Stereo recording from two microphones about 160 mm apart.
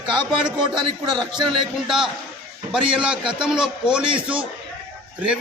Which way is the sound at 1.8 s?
5° right (ahead or behind).